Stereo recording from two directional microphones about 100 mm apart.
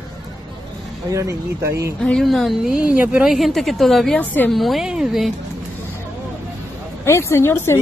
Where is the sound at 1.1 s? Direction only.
30° right (ahead or behind).